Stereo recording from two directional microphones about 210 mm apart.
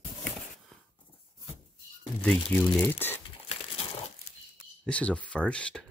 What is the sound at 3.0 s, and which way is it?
Speech, 10° left (ahead or behind).